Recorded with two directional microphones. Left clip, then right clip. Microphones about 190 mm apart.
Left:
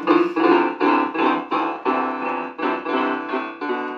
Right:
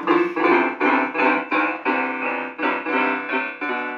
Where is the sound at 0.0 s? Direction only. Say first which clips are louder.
Left 1 dB; 30° left (ahead or behind).